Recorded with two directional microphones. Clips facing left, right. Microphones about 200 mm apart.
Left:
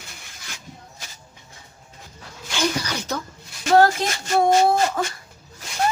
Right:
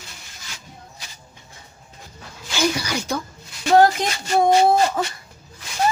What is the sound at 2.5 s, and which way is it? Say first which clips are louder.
A woman's voice: right 2 dB; 10° right (ahead or behind).